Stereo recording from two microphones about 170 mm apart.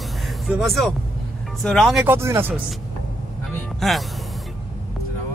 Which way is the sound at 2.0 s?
15° right (ahead or behind).